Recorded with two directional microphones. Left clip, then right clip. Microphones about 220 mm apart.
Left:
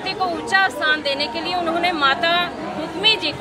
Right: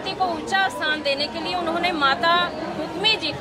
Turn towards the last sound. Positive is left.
turn(degrees=-5)  # may be behind; listen again after turning